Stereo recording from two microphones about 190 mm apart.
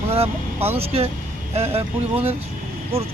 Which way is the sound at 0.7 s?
30° right (ahead or behind).